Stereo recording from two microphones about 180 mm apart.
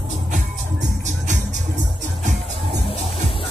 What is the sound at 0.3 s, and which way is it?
Music, 40° right (ahead or behind).